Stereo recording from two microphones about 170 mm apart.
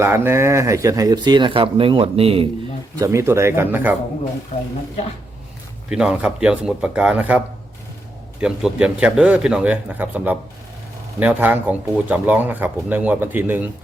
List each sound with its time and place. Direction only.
0.0 s speech: 15° right (ahead or behind); by 2.5 s 35° right (ahead or behind)
2.9 s speech: 20° right (ahead or behind)
5.9 s a man's voice: 5° right (ahead or behind)